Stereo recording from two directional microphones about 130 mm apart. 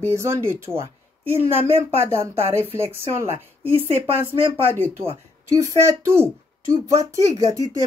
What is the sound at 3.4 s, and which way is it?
Speech, 15° left (ahead or behind).